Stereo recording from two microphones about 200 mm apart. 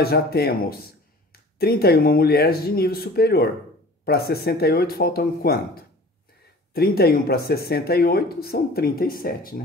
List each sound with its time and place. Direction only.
0.0 s a man's voice: 50° left (ahead or behind)